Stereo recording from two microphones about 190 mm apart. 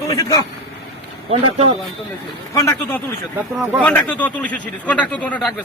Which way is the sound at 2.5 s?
15° left (ahead or behind).